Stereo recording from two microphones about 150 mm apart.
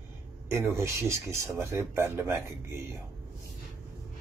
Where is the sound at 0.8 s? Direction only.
20° right (ahead or behind).